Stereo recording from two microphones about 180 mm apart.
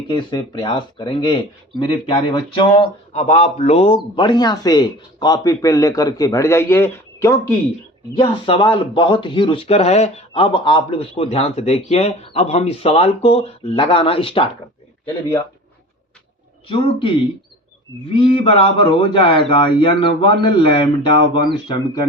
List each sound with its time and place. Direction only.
0.1 s speech: 25° left (ahead or behind)
8.2 s speech: 30° left (ahead or behind)
16.6 s speech: 30° left (ahead or behind)
18.2 s speech: 30° left (ahead or behind)